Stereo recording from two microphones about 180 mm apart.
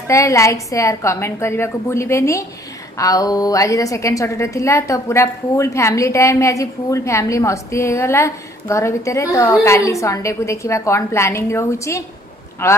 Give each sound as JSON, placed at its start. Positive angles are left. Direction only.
{"t": 0.1, "sound": "a woman's voice", "side_deg": 15}